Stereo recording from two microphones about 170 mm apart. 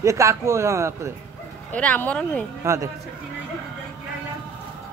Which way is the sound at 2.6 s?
15° right (ahead or behind).